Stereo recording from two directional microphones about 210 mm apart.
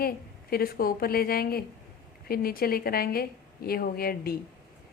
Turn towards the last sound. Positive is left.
turn(degrees=45)  # may be behind; listen again after turning